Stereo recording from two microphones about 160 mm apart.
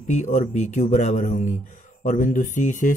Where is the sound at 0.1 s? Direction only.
50° left (ahead or behind).